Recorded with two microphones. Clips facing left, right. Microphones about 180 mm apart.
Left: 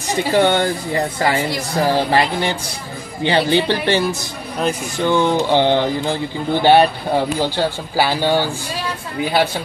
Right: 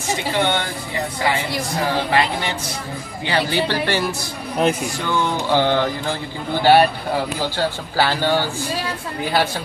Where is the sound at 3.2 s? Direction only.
25° left (ahead or behind).